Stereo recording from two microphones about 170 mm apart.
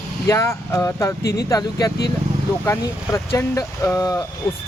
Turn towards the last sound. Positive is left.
turn(degrees=20)  # may be behind; listen again after turning